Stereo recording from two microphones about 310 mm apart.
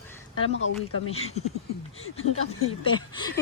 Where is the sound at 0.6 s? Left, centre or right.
Left.